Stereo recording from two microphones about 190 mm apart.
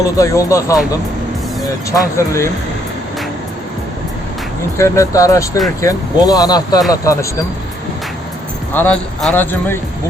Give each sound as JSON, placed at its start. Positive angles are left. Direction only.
{"t": 0.0, "sound": "a man's voice", "side_deg": 15}
{"t": 1.9, "sound": "a man's voice", "side_deg": 15}
{"t": 4.8, "sound": "a man's voice", "side_deg": 15}
{"t": 8.7, "sound": "a man's voice", "side_deg": 10}